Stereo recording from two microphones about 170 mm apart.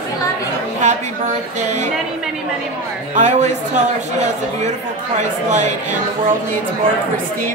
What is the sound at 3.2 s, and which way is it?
A man's voice, 45° right (ahead or behind).